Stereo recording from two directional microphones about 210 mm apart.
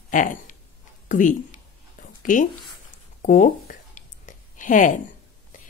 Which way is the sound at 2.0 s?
40° left (ahead or behind).